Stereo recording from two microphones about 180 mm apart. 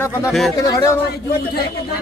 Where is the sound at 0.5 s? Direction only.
20° left (ahead or behind).